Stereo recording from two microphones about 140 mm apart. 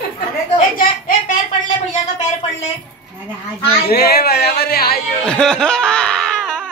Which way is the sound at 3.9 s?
90° left.